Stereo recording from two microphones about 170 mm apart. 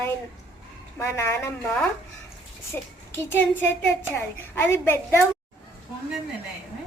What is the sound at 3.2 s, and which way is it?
A woman's voice, 15° left (ahead or behind).